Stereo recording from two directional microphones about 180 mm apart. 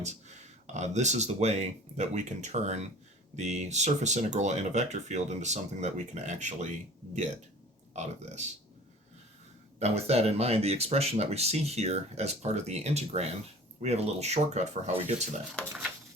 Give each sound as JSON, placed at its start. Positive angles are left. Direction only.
{"t": 0.0, "sound": "speech", "side_deg": -40}
{"t": 7.9, "sound": "speech", "side_deg": -40}
{"t": 9.7, "sound": "speech", "side_deg": -35}